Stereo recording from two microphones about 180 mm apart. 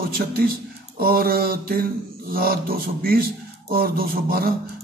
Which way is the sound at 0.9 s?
55° right (ahead or behind).